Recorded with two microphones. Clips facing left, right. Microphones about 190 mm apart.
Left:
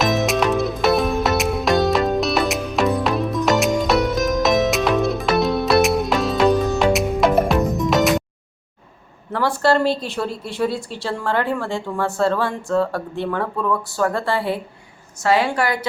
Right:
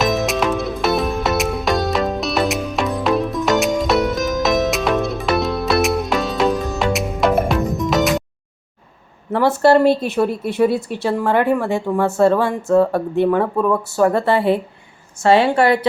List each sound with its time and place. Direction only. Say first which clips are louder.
0.0 s music: even; centre (ahead or behind)
9.3 s a woman's voice: right 5 dB; 25° right (ahead or behind)
9.8 s a woman's voice: right 6 dB; 55° right (ahead or behind)
10.4 s a woman's voice: right 6 dB; 20° right (ahead or behind)